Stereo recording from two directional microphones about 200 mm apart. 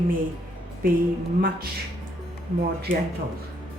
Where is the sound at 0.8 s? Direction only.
45° right (ahead or behind).